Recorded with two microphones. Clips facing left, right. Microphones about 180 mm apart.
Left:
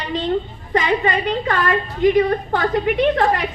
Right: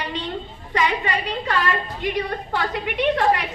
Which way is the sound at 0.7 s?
50° left (ahead or behind).